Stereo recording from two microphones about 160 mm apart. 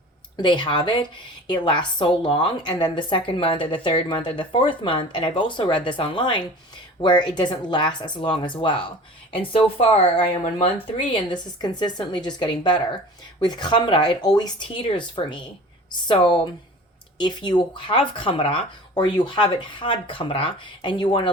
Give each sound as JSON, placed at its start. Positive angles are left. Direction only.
{"t": 0.3, "sound": "a woman's voice", "side_deg": 30}